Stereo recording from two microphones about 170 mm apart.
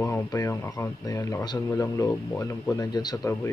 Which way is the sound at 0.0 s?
20° left (ahead or behind).